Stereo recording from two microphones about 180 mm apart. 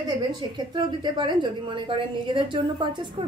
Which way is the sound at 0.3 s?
25° right (ahead or behind).